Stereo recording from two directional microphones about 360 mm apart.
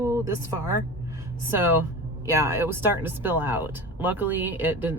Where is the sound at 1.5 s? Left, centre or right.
Centre.